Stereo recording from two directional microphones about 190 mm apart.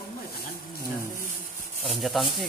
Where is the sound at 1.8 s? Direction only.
Centre (ahead or behind).